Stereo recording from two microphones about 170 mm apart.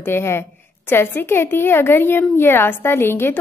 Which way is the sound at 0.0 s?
15° left (ahead or behind).